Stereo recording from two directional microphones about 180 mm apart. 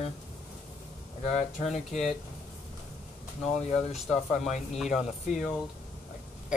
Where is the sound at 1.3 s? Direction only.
Centre (ahead or behind).